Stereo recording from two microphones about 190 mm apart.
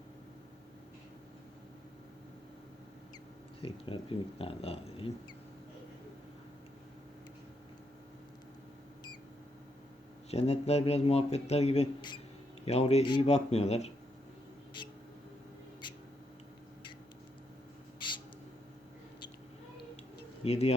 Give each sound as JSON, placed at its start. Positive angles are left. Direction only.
{"t": 3.6, "sound": "speech", "side_deg": 30}
{"t": 10.3, "sound": "speech", "side_deg": 35}
{"t": 14.8, "sound": "a sound", "side_deg": 25}
{"t": 20.4, "sound": "speech", "side_deg": 30}